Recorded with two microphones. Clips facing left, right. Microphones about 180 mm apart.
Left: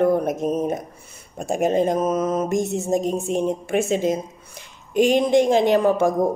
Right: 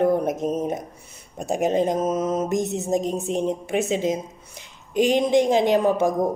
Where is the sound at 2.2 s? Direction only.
65° left (ahead or behind).